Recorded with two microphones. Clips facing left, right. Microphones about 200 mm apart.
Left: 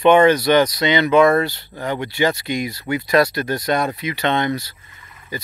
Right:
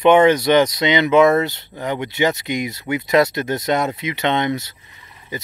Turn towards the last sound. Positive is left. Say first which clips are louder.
# even
turn(degrees=-20)  # may be behind; listen again after turning